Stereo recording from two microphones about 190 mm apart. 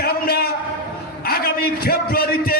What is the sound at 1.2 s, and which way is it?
A man's voice, 50° left (ahead or behind).